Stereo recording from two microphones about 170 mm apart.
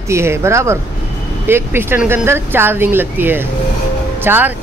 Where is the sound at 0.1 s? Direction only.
15° right (ahead or behind).